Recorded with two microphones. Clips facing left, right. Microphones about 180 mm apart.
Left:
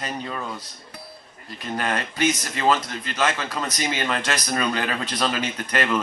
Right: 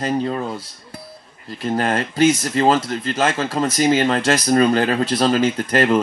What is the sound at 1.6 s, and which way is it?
Speech, 30° right (ahead or behind).